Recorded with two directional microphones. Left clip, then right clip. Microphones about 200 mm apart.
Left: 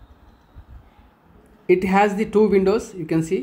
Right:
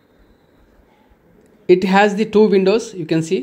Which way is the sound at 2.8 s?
15° right (ahead or behind).